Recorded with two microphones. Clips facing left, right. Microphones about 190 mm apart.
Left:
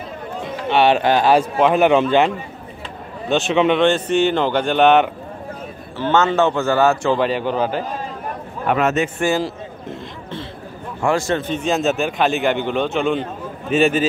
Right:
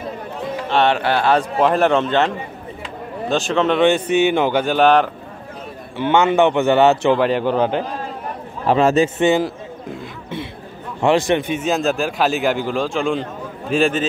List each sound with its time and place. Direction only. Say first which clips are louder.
0.7 s a man's voice: left 2 dB; 5° left (ahead or behind)
3.8 s speech: right 1 dB; 10° right (ahead or behind)
5.9 s speech: right 2 dB; 15° right (ahead or behind)
7.2 s a man's voice: right 3 dB; 10° left (ahead or behind)
8.6 s a man's voice: right 4 dB; 30° right (ahead or behind)
11.0 s speech: right 3 dB; 20° right (ahead or behind); by 14.0 s 5° left (ahead or behind)